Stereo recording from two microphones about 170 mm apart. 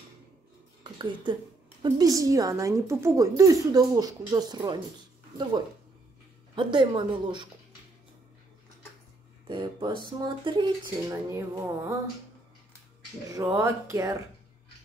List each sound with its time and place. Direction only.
1.3 s speech: 30° right (ahead or behind)
6.5 s speech: 30° right (ahead or behind)
9.5 s speech: 25° right (ahead or behind)
13.3 s speech: 20° right (ahead or behind)